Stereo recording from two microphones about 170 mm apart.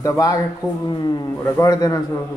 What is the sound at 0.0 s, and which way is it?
A man's voice, 20° left (ahead or behind).